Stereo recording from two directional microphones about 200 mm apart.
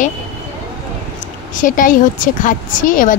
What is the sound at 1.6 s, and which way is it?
Speech, 40° left (ahead or behind).